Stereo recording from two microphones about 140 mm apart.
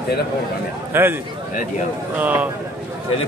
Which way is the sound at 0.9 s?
15° right (ahead or behind).